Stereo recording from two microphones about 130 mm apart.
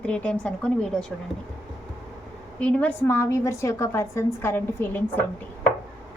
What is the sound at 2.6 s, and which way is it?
Speech, 10° left (ahead or behind).